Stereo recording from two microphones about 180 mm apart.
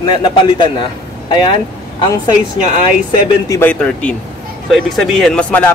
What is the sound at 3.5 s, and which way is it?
A man's voice, 10° left (ahead or behind).